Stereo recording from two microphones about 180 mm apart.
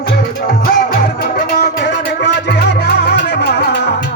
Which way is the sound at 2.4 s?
70° left (ahead or behind).